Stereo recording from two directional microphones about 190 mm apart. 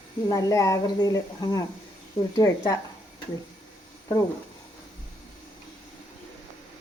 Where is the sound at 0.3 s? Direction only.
20° left (ahead or behind).